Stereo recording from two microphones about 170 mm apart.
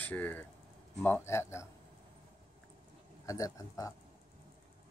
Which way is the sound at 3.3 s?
20° left (ahead or behind).